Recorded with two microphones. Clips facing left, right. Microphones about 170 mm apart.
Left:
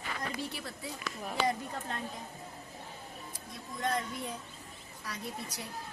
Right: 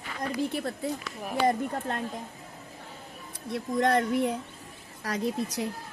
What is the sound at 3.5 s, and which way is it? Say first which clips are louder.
Speech: right 10 dB; 75° right (ahead or behind).